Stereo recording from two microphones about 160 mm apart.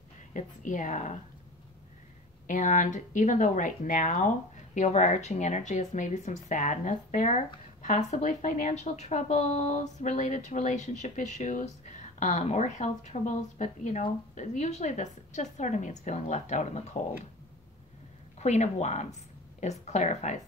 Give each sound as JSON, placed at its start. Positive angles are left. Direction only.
{"t": 0.3, "sound": "a woman's voice", "side_deg": 50}
{"t": 2.4, "sound": "a woman's voice", "side_deg": 50}
{"t": 18.4, "sound": "a woman's voice", "side_deg": 45}